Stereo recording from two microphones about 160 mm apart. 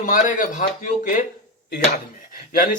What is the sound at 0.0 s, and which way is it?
Speech, 55° left (ahead or behind).